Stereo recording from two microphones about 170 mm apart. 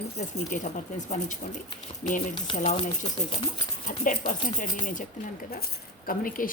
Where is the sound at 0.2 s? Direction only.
45° left (ahead or behind).